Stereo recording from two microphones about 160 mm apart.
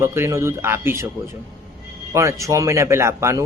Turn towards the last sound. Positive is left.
turn(degrees=-15)  # may be behind; listen again after turning